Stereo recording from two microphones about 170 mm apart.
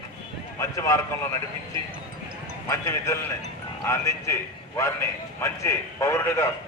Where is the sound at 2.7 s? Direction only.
15° left (ahead or behind).